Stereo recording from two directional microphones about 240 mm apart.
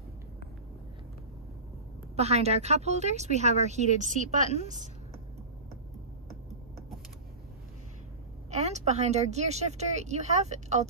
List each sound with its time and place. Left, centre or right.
2.1 s a woman's voice: right
8.5 s a woman's voice: right